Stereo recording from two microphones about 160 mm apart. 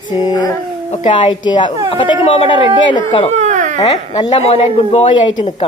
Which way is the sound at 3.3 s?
50° right (ahead or behind).